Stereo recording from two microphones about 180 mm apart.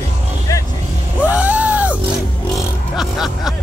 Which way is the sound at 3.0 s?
Centre (ahead or behind).